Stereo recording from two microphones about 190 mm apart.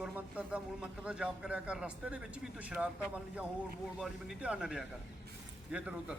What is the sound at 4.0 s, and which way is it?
Speech, 5° right (ahead or behind).